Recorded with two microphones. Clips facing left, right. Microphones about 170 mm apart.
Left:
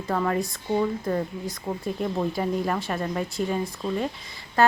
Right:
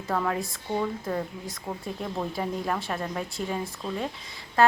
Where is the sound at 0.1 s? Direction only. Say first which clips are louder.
Left 3 dB; centre (ahead or behind).